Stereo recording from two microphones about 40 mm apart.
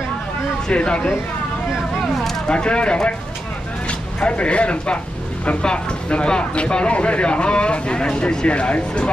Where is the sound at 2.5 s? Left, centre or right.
Left.